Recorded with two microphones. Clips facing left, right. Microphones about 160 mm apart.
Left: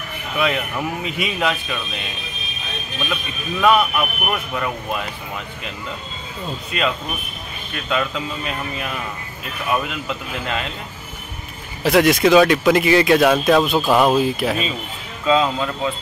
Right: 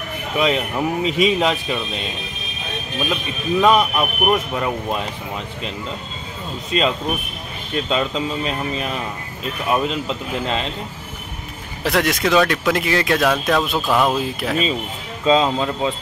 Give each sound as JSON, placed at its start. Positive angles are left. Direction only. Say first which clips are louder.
{"t": 0.4, "sound": "speech", "louder": "right 2 dB", "side_deg": -25}
{"t": 3.6, "sound": "speech", "louder": "left 1 dB", "side_deg": -25}
{"t": 6.7, "sound": "speech", "louder": "right 4 dB", "side_deg": -30}
{"t": 11.8, "sound": "speech", "louder": "left 5 dB", "side_deg": 0}
{"t": 15.2, "sound": "speech", "louder": "right 1 dB", "side_deg": -30}